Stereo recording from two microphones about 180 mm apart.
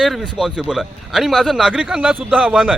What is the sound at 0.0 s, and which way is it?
Speech, centre (ahead or behind).